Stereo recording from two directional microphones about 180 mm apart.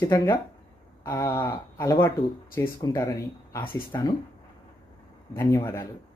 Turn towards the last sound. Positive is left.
turn(degrees=15)  # may be behind; listen again after turning